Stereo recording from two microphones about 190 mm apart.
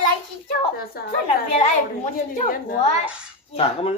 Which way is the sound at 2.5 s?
50° left (ahead or behind).